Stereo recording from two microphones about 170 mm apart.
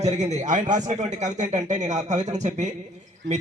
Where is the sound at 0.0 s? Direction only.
40° right (ahead or behind).